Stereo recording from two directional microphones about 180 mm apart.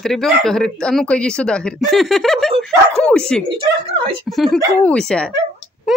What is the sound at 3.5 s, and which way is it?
Speech, 30° right (ahead or behind).